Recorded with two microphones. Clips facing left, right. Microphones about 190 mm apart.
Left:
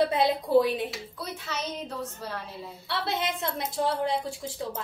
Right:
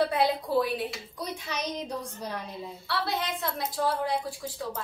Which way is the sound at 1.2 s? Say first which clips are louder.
Right 2 dB; 15° right (ahead or behind).